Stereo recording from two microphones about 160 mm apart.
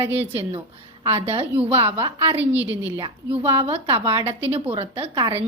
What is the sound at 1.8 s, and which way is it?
Speech, 35° right (ahead or behind).